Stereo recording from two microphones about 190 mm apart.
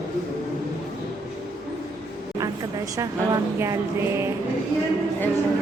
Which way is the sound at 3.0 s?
15° right (ahead or behind).